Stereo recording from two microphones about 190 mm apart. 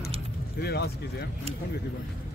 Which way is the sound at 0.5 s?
60° left (ahead or behind).